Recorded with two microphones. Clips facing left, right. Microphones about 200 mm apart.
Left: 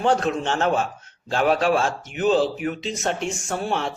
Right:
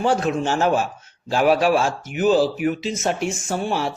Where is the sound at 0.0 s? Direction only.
5° right (ahead or behind).